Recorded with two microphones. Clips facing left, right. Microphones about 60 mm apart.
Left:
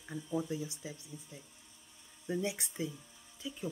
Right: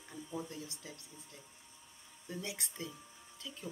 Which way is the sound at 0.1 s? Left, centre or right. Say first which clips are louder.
Left 7 dB; centre.